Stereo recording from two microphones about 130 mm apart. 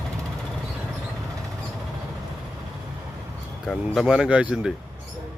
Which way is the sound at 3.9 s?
5° right (ahead or behind).